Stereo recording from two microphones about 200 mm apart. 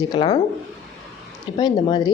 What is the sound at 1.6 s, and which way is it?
Speech, 20° left (ahead or behind).